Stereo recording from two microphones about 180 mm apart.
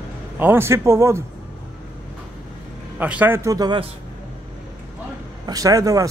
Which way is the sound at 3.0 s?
10° right (ahead or behind).